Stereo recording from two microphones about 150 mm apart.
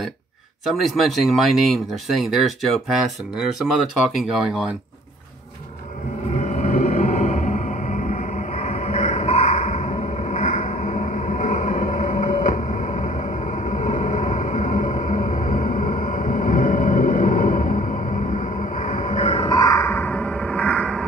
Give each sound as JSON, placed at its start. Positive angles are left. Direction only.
{"t": 0.7, "sound": "speech", "side_deg": 0}
{"t": 4.3, "sound": "speech", "side_deg": -5}
{"t": 6.3, "sound": "music", "side_deg": 55}
{"t": 12.4, "sound": "a sound", "side_deg": 55}
{"t": 13.2, "sound": "music", "side_deg": 45}
{"t": 15.7, "sound": "music", "side_deg": 65}